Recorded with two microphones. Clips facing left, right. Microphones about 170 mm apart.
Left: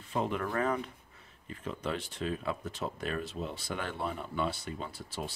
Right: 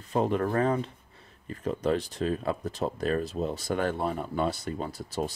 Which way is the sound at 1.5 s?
40° right (ahead or behind).